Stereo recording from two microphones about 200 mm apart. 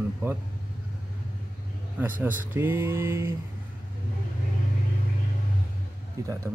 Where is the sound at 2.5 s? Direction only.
10° right (ahead or behind).